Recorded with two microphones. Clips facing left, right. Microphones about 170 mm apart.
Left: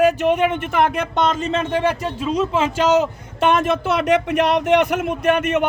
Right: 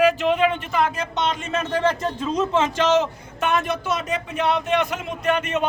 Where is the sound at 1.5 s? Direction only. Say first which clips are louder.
Left 2 dB; 25° left (ahead or behind).